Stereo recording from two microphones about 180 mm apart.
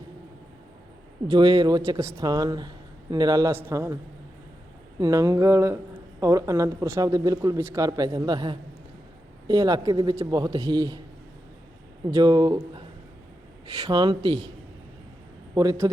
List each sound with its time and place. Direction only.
1.3 s a man's voice: 20° right (ahead or behind)
4.9 s a man's voice: 20° right (ahead or behind)
12.1 s a man's voice: 20° right (ahead or behind)
15.5 s a man's voice: 20° right (ahead or behind)